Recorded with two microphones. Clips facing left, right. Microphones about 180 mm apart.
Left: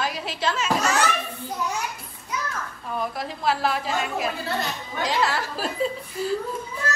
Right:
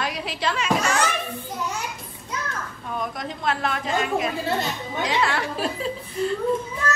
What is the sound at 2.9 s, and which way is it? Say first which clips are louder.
A woman's voice: left 1 dB; 5° left (ahead or behind).